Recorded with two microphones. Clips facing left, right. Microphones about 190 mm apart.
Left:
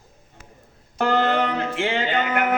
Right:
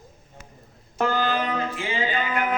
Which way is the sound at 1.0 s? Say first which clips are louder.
Left 4 dB; 70° left (ahead or behind).